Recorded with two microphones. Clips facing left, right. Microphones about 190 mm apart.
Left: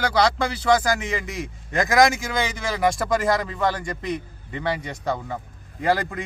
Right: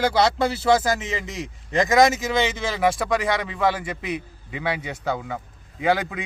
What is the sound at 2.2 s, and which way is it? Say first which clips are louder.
Speech: right 3 dB; 20° right (ahead or behind).